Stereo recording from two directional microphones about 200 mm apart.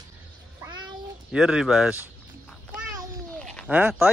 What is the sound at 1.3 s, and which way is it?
Speech, 5° right (ahead or behind).